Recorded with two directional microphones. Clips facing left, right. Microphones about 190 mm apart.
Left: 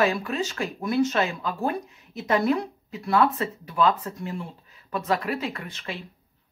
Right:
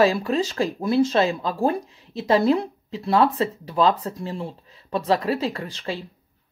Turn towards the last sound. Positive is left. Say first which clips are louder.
# right 5 dB
turn(degrees=-30)  # may be behind; listen again after turning